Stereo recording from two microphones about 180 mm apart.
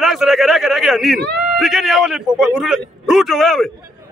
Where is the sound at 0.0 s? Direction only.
Centre (ahead or behind).